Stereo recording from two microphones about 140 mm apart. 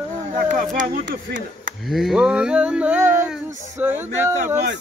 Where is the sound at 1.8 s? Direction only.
Centre (ahead or behind).